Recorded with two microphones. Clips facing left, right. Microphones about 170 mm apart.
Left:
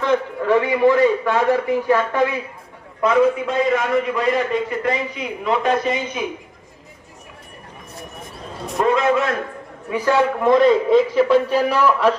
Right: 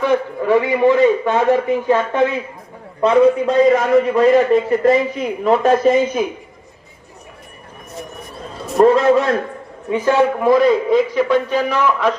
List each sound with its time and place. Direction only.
0.0 s a man's voice: 15° right (ahead or behind)
3.0 s a man's voice: 35° right (ahead or behind)
8.8 s a man's voice: 35° right (ahead or behind)
9.9 s a man's voice: 15° right (ahead or behind)
10.5 s a man's voice: centre (ahead or behind)